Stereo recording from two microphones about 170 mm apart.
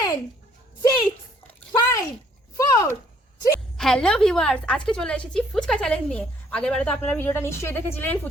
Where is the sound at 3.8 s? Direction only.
5° left (ahead or behind).